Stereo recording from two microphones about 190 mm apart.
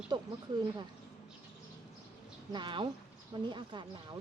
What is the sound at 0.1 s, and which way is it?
Speech, 25° right (ahead or behind).